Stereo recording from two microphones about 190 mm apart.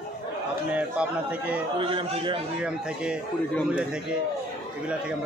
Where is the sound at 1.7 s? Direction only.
25° right (ahead or behind).